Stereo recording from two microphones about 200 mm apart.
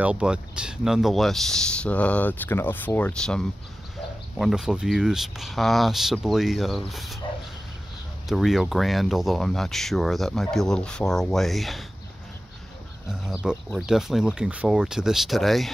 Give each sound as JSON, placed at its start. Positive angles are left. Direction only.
{"t": 0.0, "sound": "speech", "side_deg": -5}
{"t": 8.3, "sound": "speech", "side_deg": 0}
{"t": 13.1, "sound": "speech", "side_deg": -5}